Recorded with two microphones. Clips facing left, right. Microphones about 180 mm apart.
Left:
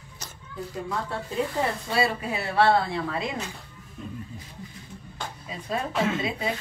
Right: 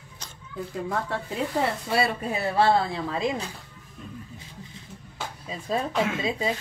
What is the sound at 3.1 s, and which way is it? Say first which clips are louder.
Speech: right 3 dB; 25° right (ahead or behind).